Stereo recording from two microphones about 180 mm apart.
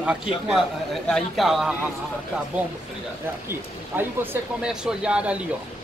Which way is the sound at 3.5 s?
10° right (ahead or behind).